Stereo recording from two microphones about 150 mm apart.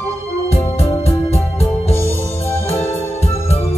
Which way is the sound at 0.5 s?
40° left (ahead or behind).